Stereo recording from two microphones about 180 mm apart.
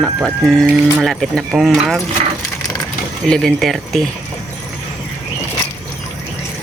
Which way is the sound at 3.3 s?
Centre (ahead or behind).